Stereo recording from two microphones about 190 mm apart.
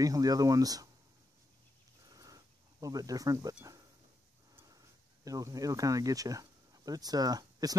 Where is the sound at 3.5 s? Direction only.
15° right (ahead or behind).